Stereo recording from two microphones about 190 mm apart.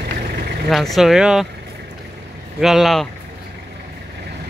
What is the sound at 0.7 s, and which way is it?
Speech, centre (ahead or behind).